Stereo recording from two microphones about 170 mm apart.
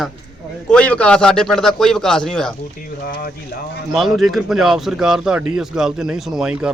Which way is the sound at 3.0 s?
60° left (ahead or behind).